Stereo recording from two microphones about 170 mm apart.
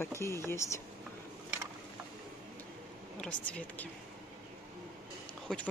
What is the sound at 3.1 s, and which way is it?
Speech, 5° left (ahead or behind).